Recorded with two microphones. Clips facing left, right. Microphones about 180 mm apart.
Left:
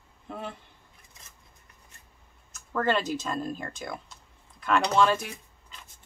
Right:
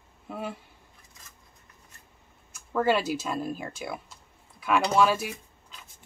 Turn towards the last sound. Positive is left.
turn(degrees=-5)  # may be behind; listen again after turning